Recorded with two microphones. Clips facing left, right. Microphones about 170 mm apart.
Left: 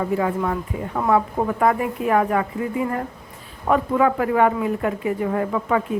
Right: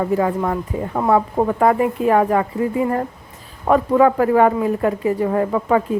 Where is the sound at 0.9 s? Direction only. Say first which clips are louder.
Right 3 dB; 35° right (ahead or behind).